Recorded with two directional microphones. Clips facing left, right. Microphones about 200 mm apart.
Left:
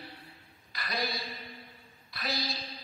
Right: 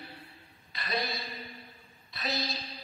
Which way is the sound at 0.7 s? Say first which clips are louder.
Right 1 dB; 25° right (ahead or behind).